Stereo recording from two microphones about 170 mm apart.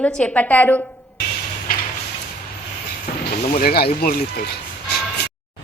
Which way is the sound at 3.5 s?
60° left (ahead or behind).